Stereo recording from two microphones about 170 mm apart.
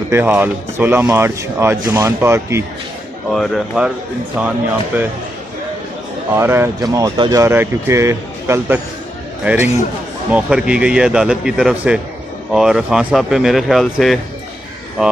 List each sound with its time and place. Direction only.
0.1 s speech: 10° right (ahead or behind)
3.3 s a man's voice: centre (ahead or behind)
6.3 s a man's voice: 15° right (ahead or behind)